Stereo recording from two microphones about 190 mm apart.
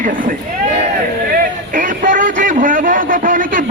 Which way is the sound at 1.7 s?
45° right (ahead or behind).